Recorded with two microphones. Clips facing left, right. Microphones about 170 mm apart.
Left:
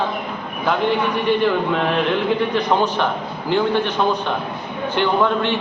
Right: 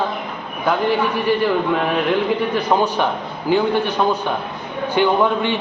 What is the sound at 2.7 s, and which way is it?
A man's voice, 10° right (ahead or behind).